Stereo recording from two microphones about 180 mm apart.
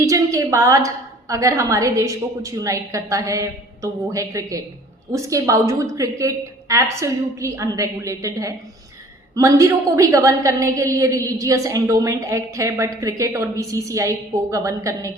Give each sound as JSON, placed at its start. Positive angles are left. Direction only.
{"t": 0.0, "sound": "a woman's voice", "side_deg": -15}